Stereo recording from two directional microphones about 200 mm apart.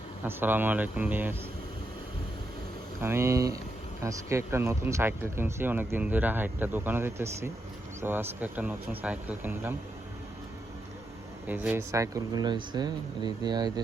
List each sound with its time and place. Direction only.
0.3 s speech: 10° right (ahead or behind)
3.0 s speech: 10° right (ahead or behind)
11.4 s speech: 10° right (ahead or behind)